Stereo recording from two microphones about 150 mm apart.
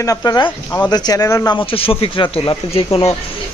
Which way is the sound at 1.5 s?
40° left (ahead or behind).